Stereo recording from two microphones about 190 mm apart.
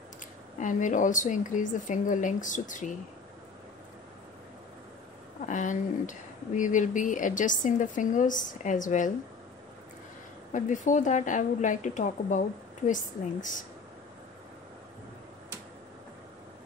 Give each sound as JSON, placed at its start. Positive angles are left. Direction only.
{"t": 0.6, "sound": "speech", "side_deg": 40}
{"t": 5.5, "sound": "speech", "side_deg": 40}
{"t": 10.5, "sound": "speech", "side_deg": 40}